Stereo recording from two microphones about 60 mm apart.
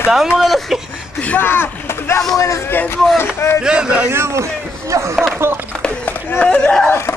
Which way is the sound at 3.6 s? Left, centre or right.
Centre.